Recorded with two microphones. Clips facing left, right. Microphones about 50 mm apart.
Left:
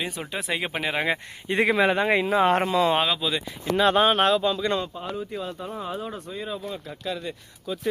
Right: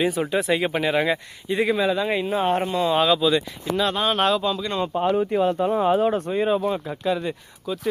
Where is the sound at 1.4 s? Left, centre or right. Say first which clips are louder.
Even; left.